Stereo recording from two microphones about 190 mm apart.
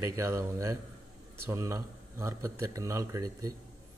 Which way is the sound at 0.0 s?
15° right (ahead or behind).